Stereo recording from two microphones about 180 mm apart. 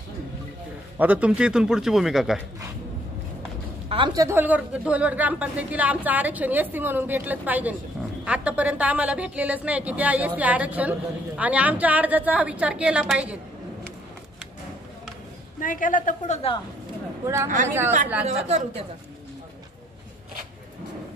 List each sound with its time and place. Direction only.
0.9 s a man's voice: 5° right (ahead or behind)
3.9 s a woman's voice: 25° right (ahead or behind); by 13.4 s 5° right (ahead or behind)
15.6 s a woman's voice: 50° left (ahead or behind)
17.6 s a woman's voice: 10° right (ahead or behind)
18.2 s a woman's voice: 35° right (ahead or behind)